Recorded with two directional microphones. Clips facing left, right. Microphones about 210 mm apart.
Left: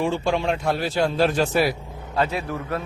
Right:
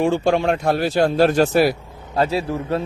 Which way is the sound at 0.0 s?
50° right (ahead or behind).